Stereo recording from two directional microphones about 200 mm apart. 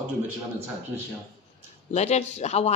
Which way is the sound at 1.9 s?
35° left (ahead or behind).